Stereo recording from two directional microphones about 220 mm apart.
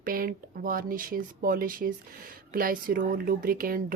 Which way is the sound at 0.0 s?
40° right (ahead or behind).